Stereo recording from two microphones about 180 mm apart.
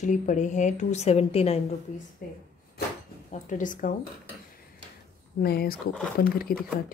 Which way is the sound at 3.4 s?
45° left (ahead or behind).